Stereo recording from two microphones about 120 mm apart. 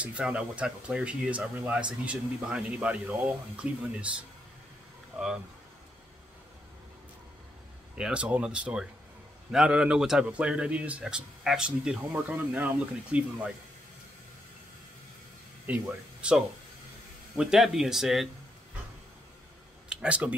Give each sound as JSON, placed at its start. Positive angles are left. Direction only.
{"t": 0.0, "sound": "speech", "side_deg": -10}
{"t": 5.1, "sound": "speech", "side_deg": -5}
{"t": 8.0, "sound": "speech", "side_deg": -10}
{"t": 12.0, "sound": "speech", "side_deg": -15}
{"t": 15.6, "sound": "speech", "side_deg": -10}
{"t": 19.9, "sound": "speech", "side_deg": -10}